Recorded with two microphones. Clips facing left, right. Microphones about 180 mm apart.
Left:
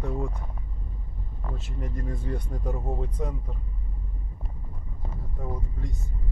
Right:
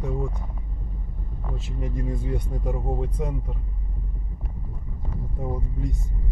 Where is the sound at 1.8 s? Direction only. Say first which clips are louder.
Right 4 dB; 15° right (ahead or behind).